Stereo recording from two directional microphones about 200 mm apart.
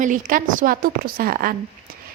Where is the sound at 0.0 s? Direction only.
40° right (ahead or behind).